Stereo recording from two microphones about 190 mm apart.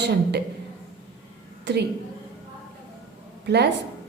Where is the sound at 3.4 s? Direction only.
60° right (ahead or behind).